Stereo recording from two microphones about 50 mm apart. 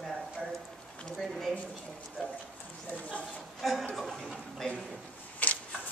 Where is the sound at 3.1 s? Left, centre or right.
Left.